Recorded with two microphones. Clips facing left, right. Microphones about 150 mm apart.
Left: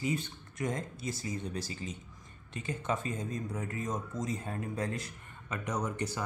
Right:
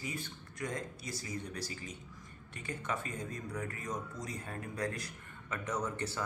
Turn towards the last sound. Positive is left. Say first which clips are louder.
# left 2 dB
turn(degrees=15)  # may be behind; listen again after turning